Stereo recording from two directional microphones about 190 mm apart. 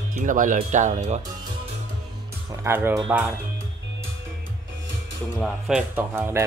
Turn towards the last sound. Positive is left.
turn(degrees=-10)  # may be behind; listen again after turning